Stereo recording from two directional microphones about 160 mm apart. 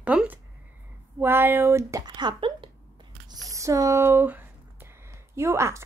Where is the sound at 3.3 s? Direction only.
20° right (ahead or behind).